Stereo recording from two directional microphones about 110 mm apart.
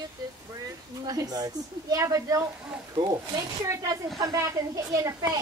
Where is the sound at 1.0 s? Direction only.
35° right (ahead or behind).